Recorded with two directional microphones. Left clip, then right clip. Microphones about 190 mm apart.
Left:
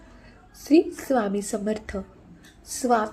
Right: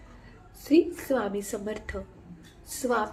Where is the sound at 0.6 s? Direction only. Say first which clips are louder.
Left 3 dB; 10° left (ahead or behind).